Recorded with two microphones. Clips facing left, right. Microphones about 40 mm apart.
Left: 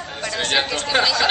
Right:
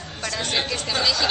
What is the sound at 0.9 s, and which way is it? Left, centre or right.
Speech, left.